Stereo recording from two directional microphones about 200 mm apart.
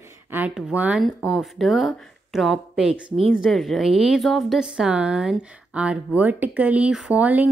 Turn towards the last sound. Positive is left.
turn(degrees=-10)  # may be behind; listen again after turning